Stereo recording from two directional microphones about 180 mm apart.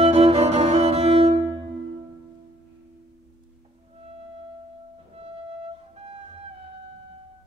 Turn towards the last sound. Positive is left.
turn(degrees=-30)  # may be behind; listen again after turning